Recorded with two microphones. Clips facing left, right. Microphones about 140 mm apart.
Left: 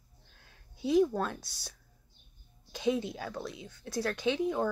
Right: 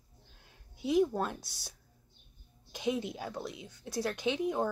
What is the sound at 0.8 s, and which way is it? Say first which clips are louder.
Speech: left 2 dB; 20° right (ahead or behind).